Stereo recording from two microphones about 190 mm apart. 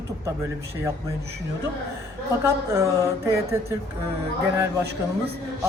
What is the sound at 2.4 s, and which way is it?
Speech, 15° right (ahead or behind).